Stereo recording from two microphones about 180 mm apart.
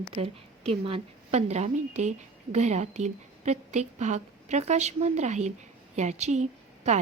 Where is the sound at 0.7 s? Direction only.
30° right (ahead or behind).